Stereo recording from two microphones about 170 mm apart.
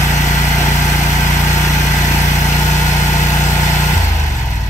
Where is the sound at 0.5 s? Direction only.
15° left (ahead or behind).